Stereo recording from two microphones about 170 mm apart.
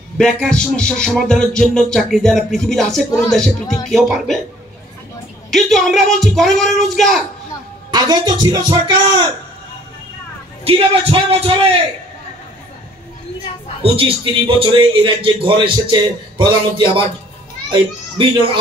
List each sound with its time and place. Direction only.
0.2 s music: 5° left (ahead or behind)
5.5 s music: centre (ahead or behind)
7.9 s a man's voice: 25° right (ahead or behind)
10.7 s music: 35° right (ahead or behind)
13.8 s a man's voice: 30° right (ahead or behind)